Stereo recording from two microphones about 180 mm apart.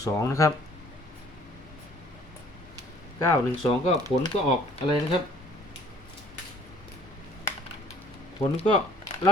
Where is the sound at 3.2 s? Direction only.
20° left (ahead or behind).